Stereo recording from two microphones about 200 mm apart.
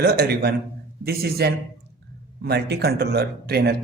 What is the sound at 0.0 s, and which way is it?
Speech, 50° right (ahead or behind).